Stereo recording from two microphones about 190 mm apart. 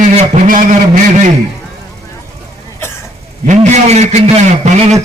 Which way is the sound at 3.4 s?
40° right (ahead or behind).